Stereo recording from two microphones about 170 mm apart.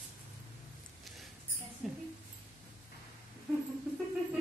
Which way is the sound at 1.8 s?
5° right (ahead or behind).